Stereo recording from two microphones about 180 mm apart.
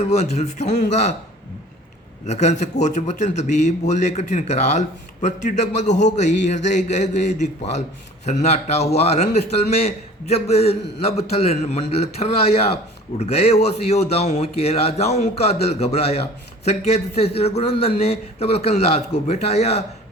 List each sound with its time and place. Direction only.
0.0 s speech: 40° left (ahead or behind)
2.2 s speech: 40° left (ahead or behind)